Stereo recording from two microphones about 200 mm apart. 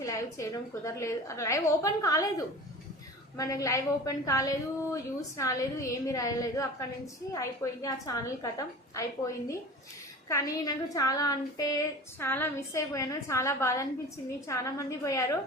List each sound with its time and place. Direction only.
0.0 s a woman's voice: 15° left (ahead or behind)
3.3 s a woman's voice: 15° left (ahead or behind)